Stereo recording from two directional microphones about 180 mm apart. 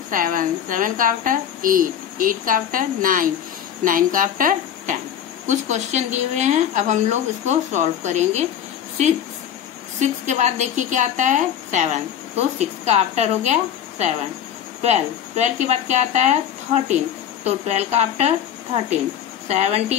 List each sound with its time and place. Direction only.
0.1 s a woman's voice: 50° right (ahead or behind)
9.9 s a woman's voice: 40° right (ahead or behind)
17.4 s a woman's voice: 35° right (ahead or behind)
19.4 s a woman's voice: 40° right (ahead or behind)